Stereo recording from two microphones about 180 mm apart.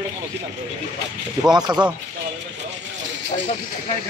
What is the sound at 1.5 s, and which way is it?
Speech, 25° right (ahead or behind).